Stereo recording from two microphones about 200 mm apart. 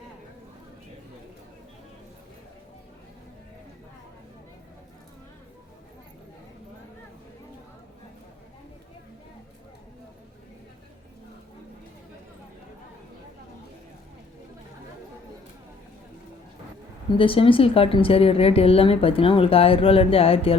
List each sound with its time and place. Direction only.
17.1 s a woman's voice: 25° left (ahead or behind)